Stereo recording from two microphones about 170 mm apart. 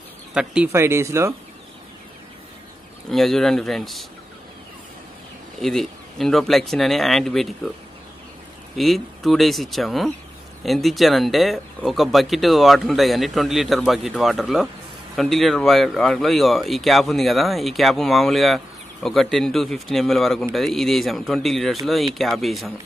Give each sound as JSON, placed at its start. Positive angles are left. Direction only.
{"t": 0.3, "sound": "a man's voice", "side_deg": -5}
{"t": 0.7, "sound": "speech", "side_deg": -15}
{"t": 3.1, "sound": "speech", "side_deg": 0}
{"t": 5.6, "sound": "speech", "side_deg": 0}
{"t": 8.7, "sound": "speech", "side_deg": 0}